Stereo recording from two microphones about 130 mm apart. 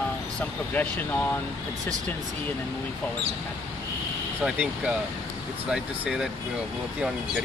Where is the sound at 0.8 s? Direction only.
15° left (ahead or behind).